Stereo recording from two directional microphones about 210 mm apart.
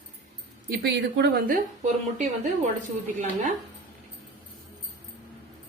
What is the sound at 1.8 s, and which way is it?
Speech, 35° right (ahead or behind).